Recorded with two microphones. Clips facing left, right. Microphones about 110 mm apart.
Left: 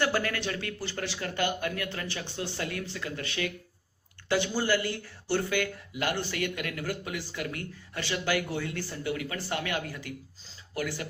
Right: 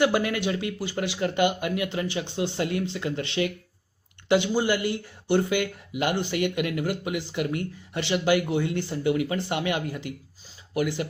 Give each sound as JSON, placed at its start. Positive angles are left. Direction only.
{"t": 0.0, "sound": "speech", "side_deg": -15}